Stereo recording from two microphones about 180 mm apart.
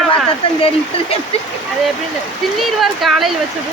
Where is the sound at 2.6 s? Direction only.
Centre (ahead or behind).